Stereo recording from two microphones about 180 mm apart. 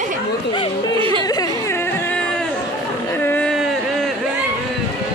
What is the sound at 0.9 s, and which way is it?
Music, 30° right (ahead or behind).